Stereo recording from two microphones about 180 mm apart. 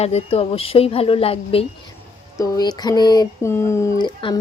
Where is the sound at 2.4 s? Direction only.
20° left (ahead or behind).